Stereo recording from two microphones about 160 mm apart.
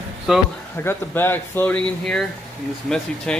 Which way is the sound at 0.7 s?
15° left (ahead or behind).